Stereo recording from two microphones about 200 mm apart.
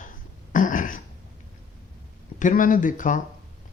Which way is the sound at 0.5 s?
40° left (ahead or behind).